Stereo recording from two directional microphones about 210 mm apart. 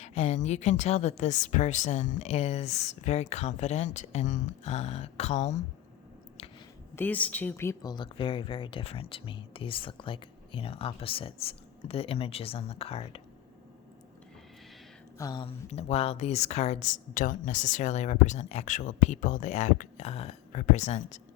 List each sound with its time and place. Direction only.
0.0 s speech: 30° left (ahead or behind)
6.9 s speech: 10° left (ahead or behind); by 13.2 s 25° left (ahead or behind)
15.2 s speech: 20° left (ahead or behind)